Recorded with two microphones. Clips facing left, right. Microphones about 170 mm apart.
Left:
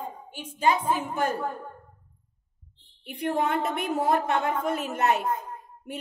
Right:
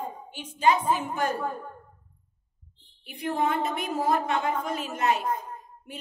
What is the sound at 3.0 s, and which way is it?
A woman's voice, 65° left (ahead or behind).